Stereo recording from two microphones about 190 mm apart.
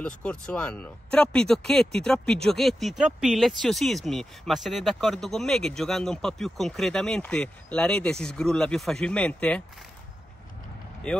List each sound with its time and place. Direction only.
0.0 s speech: 5° left (ahead or behind)